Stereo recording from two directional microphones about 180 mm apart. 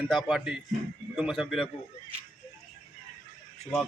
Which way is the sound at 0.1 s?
Centre (ahead or behind).